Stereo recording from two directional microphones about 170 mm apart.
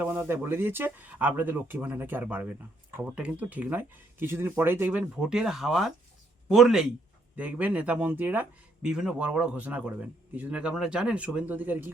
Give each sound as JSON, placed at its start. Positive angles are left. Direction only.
{"t": 0.0, "sound": "speech", "side_deg": -10}